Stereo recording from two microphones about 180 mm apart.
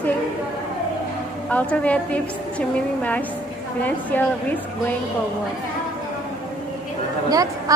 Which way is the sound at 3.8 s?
10° left (ahead or behind).